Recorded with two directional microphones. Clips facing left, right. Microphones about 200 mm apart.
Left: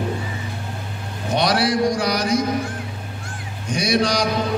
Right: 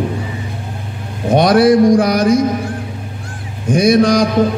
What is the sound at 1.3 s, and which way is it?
Mantra, 50° right (ahead or behind).